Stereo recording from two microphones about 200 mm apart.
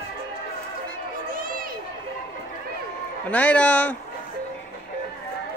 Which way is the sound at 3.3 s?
5° left (ahead or behind).